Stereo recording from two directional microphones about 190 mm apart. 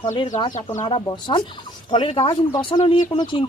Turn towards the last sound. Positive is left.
turn(degrees=25)  # may be behind; listen again after turning